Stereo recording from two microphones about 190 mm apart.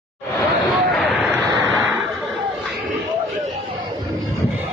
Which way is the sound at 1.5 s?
20° right (ahead or behind).